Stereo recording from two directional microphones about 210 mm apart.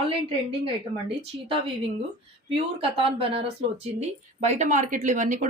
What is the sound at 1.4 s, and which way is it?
A woman's voice, 25° right (ahead or behind).